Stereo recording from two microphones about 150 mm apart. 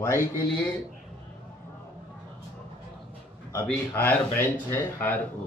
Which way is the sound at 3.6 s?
10° left (ahead or behind).